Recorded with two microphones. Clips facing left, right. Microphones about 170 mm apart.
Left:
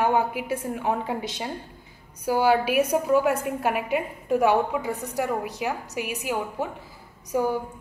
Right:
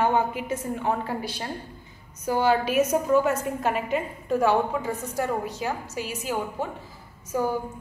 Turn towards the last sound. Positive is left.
turn(degrees=15)  # may be behind; listen again after turning